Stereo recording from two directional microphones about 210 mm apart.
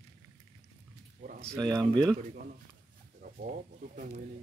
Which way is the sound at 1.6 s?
15° right (ahead or behind).